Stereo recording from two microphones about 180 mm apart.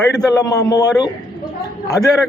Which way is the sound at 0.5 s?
20° left (ahead or behind).